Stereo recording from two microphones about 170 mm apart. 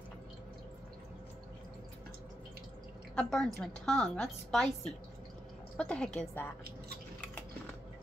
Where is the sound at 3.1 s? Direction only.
5° left (ahead or behind).